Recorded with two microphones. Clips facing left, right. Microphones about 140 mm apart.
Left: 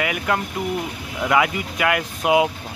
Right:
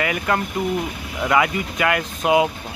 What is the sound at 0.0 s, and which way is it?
Speech, 5° left (ahead or behind).